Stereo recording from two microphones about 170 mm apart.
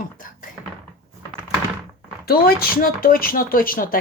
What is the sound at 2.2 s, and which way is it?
Speech, 60° left (ahead or behind).